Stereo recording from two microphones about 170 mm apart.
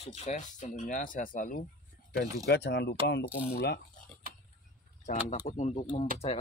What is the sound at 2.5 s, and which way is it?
Speech, 80° left.